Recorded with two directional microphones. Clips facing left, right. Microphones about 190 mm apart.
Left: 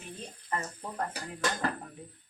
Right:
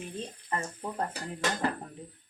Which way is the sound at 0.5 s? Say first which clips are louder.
Right 1 dB; 30° right (ahead or behind).